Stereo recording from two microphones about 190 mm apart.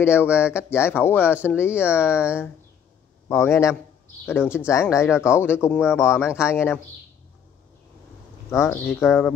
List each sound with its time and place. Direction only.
0.0 s speech: 10° left (ahead or behind)
6.2 s speech: 5° right (ahead or behind)
6.5 s speech: 15° left (ahead or behind)
8.5 s speech: 15° left (ahead or behind)